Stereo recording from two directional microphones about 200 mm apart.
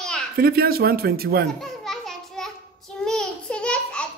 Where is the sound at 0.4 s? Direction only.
50° right (ahead or behind).